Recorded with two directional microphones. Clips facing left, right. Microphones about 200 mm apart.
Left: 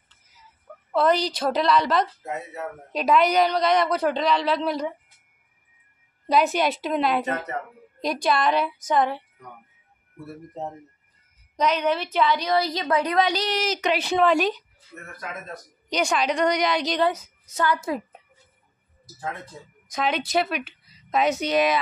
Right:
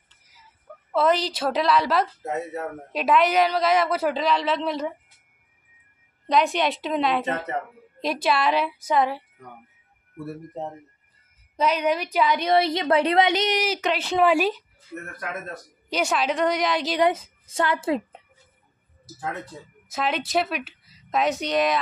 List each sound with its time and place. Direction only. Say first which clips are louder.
0.9 s a woman's voice: even; 5° right (ahead or behind)
6.2 s a woman's voice: left 1 dB; 5° left (ahead or behind)
7.2 s a woman's voice: right 1 dB; 30° right (ahead or behind)
8.0 s a woman's voice: even; 5° right (ahead or behind)
11.5 s speech: even; 5° right (ahead or behind)
12.4 s a woman's voice: right 3 dB; 25° right (ahead or behind); by 14.6 s 10° right (ahead or behind)
15.9 s a woman's voice: even; 5° right (ahead or behind)
17.0 s a woman's voice: right 2 dB; 25° right (ahead or behind)
19.9 s a woman's voice: left 1 dB; 5° right (ahead or behind)